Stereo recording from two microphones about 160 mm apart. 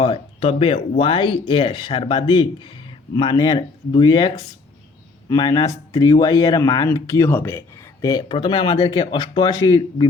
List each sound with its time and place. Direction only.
0.0 s speech: 35° left (ahead or behind); by 7.6 s 15° left (ahead or behind)
8.0 s speech: 25° left (ahead or behind)